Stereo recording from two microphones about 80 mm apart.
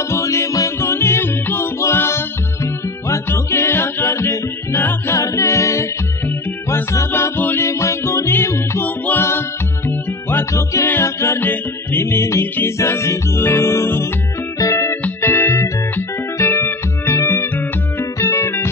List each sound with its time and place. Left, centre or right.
0.1 s music: left
5.3 s a capella: left
6.7 s music: left
7.1 s music: left
8.8 s music: left
18.2 s music: left